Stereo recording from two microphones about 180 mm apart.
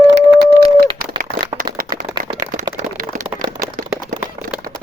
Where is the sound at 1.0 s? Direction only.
55° right (ahead or behind).